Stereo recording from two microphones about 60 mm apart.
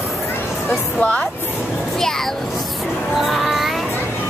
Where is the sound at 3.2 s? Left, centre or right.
Centre.